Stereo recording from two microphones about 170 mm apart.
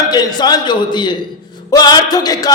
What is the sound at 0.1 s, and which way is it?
A man's voice, 25° left (ahead or behind).